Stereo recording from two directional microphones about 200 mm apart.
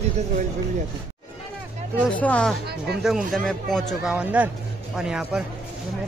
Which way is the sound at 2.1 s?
5° left (ahead or behind).